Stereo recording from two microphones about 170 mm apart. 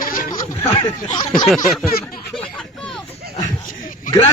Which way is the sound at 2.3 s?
5° left (ahead or behind).